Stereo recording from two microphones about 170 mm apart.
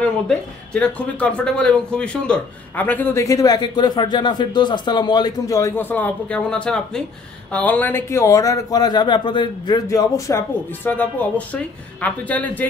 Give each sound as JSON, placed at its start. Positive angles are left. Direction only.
{"t": 0.0, "sound": "speech", "side_deg": 5}